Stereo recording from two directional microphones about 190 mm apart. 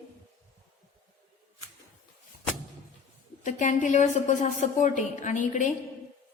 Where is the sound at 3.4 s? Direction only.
40° left (ahead or behind).